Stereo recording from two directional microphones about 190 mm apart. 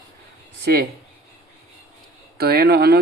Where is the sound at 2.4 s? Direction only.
55° right (ahead or behind).